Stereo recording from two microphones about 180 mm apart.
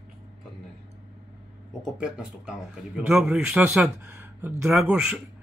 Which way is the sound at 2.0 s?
5° right (ahead or behind).